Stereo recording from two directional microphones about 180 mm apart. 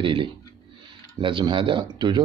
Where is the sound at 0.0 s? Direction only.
30° right (ahead or behind).